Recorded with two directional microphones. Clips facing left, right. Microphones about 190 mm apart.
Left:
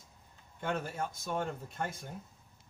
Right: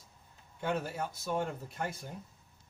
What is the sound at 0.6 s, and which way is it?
Speech, 5° right (ahead or behind).